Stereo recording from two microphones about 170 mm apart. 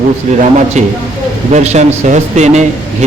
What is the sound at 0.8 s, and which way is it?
A man's voice, 40° right (ahead or behind).